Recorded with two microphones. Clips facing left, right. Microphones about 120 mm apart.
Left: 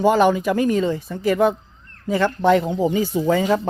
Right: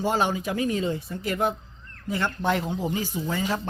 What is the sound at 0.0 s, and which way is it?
Speech, 65° left (ahead or behind).